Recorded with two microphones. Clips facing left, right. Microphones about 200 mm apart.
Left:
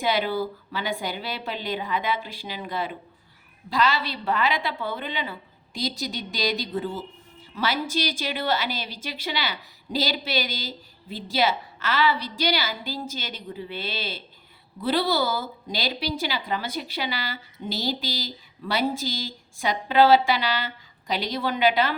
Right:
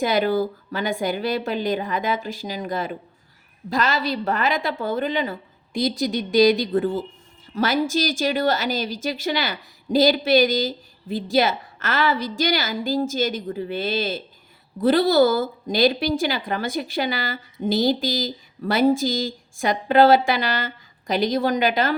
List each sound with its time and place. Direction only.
0.0 s a woman's voice: 45° right (ahead or behind)